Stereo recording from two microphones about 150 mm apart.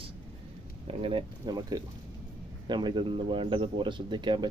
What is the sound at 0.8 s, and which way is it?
Speech, 35° right (ahead or behind).